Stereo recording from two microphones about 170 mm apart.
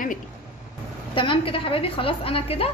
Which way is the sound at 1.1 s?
30° left (ahead or behind).